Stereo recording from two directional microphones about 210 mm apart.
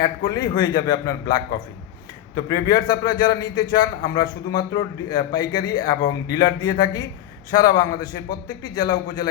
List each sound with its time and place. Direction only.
0.0 s a man's voice: 20° left (ahead or behind)